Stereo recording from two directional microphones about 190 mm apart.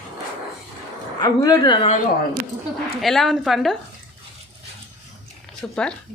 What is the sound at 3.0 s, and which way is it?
Speech, centre (ahead or behind).